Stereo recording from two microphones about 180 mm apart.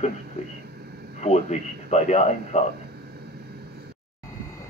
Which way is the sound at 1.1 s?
40° left (ahead or behind).